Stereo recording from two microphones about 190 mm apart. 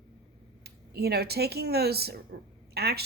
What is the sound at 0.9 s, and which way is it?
Speech, 55° right (ahead or behind).